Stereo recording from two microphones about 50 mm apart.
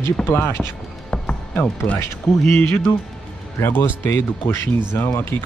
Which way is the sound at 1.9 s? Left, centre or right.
Left.